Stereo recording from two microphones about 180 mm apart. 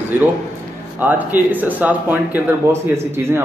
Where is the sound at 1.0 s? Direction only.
10° right (ahead or behind).